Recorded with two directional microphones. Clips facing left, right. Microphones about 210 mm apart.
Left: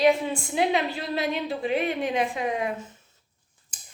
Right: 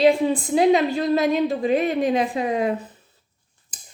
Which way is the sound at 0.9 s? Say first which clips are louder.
Right 9 dB; 45° right (ahead or behind).